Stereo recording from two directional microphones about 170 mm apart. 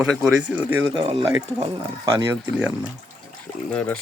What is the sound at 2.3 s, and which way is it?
Speech, 10° right (ahead or behind).